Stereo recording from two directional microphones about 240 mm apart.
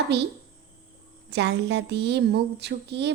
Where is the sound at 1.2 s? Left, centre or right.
Right.